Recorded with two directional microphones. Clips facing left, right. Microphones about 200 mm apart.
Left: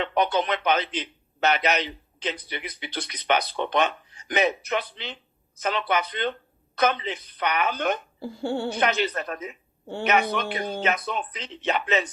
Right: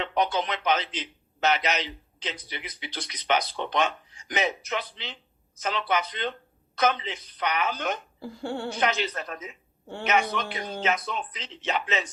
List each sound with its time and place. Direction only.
0.0 s a man's voice: 60° left (ahead or behind)
8.2 s speech: 30° left (ahead or behind)
8.7 s a man's voice: 60° left (ahead or behind)